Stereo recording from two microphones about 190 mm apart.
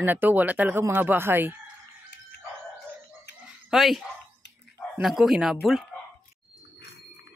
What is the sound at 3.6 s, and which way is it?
Speech, centre (ahead or behind).